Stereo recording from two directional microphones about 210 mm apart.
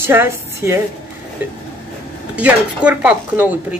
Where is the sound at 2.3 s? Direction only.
5° right (ahead or behind).